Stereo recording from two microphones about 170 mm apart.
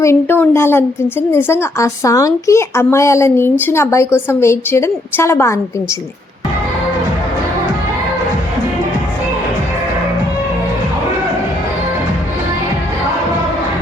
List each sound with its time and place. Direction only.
0.0 s a woman's voice: 15° left (ahead or behind)